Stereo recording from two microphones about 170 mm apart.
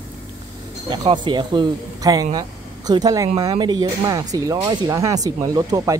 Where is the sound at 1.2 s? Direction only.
25° right (ahead or behind).